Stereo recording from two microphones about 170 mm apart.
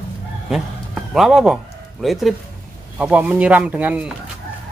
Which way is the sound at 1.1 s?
Centre (ahead or behind).